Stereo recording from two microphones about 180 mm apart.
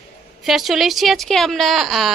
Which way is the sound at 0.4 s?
Centre (ahead or behind).